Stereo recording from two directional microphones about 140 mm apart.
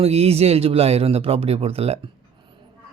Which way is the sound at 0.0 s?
50° right (ahead or behind).